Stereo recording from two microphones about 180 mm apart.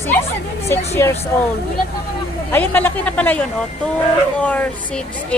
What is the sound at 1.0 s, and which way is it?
Speech, 15° left (ahead or behind).